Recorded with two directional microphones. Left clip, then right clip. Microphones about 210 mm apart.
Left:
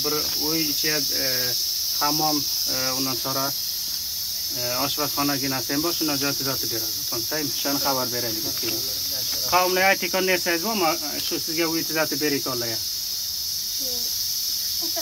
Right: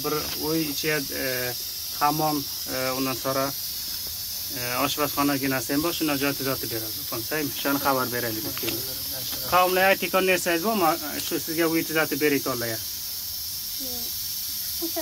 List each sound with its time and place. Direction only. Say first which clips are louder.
0.0 s cricket: left 3 dB; 25° right (ahead or behind)
2.0 s speech: right 1 dB; 25° right (ahead or behind)
2.8 s cricket: left 2 dB; 30° right (ahead or behind)
4.7 s cricket: right 2 dB; 25° right (ahead or behind)
7.6 s speech: right 1 dB; 15° right (ahead or behind)
9.5 s speech: even; 20° right (ahead or behind)
11.9 s cricket: even; 25° right (ahead or behind)